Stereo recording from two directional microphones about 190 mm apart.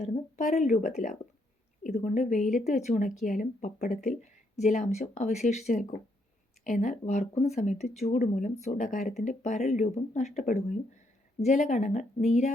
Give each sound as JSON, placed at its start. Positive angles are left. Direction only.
{"t": 0.0, "sound": "speech", "side_deg": 35}